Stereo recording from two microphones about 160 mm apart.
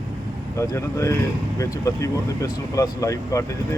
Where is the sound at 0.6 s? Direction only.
20° left (ahead or behind).